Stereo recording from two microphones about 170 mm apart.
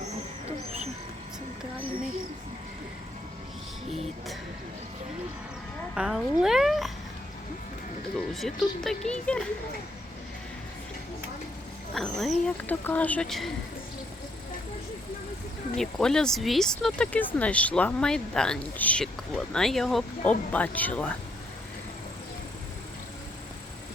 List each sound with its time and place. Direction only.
0.4 s wild animals: 40° right (ahead or behind)
3.8 s music: 35° right (ahead or behind)
5.9 s speech: 5° right (ahead or behind)
8.3 s speech: centre (ahead or behind)
11.9 s speech: centre (ahead or behind)
15.7 s speech: centre (ahead or behind)